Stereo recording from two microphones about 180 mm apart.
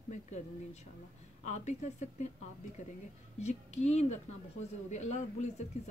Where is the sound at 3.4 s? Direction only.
40° left (ahead or behind).